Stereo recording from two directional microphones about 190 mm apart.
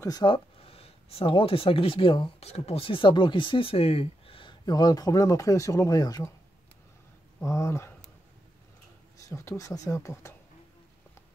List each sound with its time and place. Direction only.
0.0 s speech: 20° left (ahead or behind)
7.3 s speech: 15° left (ahead or behind)
9.2 s speech: 15° left (ahead or behind)